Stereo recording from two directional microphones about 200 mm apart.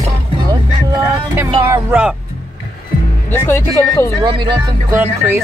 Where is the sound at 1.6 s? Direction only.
10° right (ahead or behind).